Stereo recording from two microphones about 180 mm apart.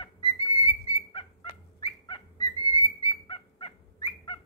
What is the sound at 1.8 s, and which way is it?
Bird, 20° left (ahead or behind).